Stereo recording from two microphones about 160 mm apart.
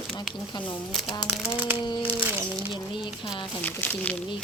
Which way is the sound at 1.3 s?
10° right (ahead or behind).